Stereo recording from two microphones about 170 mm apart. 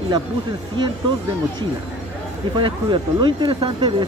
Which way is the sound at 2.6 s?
30° right (ahead or behind).